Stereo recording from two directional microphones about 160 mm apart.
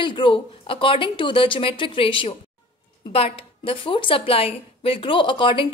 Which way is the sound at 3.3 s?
35° left (ahead or behind).